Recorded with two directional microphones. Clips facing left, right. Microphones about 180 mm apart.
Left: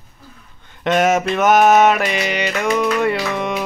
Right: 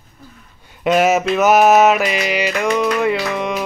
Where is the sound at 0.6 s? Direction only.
10° right (ahead or behind).